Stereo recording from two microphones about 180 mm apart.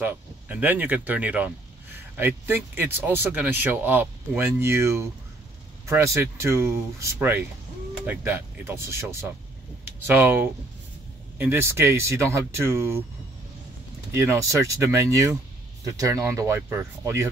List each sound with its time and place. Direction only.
0.0 s speech: 10° right (ahead or behind)
14.1 s speech: 15° right (ahead or behind)